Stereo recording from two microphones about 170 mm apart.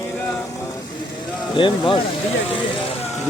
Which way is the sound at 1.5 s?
30° left (ahead or behind).